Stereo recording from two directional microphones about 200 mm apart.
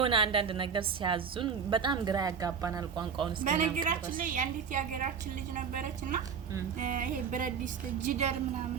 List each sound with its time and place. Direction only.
0.0 s a woman's voice: 25° right (ahead or behind)
3.4 s a woman's voice: 40° right (ahead or behind)